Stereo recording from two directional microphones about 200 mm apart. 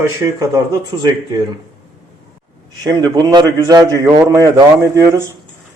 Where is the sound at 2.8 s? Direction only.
20° right (ahead or behind).